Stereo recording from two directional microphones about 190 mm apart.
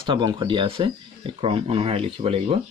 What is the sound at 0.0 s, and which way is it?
Speech, 25° right (ahead or behind).